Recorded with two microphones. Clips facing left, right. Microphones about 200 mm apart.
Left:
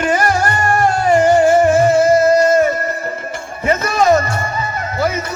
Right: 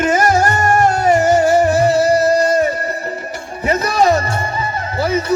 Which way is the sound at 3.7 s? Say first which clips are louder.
Left 1 dB; 35° right (ahead or behind).